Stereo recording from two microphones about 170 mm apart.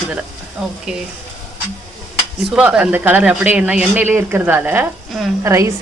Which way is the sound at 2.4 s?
5° right (ahead or behind).